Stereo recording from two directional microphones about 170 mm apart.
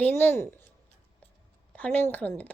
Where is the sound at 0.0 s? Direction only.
10° left (ahead or behind).